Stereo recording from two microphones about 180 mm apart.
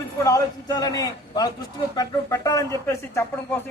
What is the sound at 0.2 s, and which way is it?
A man's voice, 20° left (ahead or behind).